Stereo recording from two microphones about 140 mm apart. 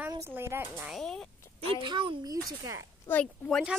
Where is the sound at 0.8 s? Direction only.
Centre (ahead or behind).